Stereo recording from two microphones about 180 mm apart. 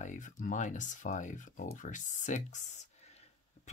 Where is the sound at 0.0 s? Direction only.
45° left (ahead or behind).